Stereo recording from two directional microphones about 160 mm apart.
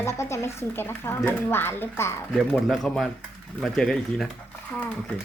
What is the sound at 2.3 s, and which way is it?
Speech, centre (ahead or behind).